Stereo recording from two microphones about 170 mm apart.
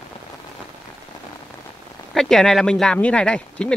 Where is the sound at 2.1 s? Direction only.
Centre (ahead or behind).